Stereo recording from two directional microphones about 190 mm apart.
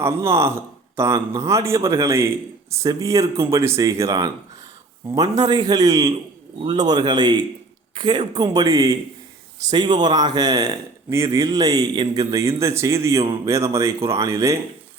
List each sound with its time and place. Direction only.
0.0 s a man's voice: 15° right (ahead or behind)